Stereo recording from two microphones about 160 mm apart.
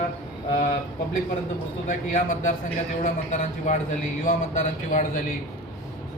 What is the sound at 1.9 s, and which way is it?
A man's voice, 55° left (ahead or behind).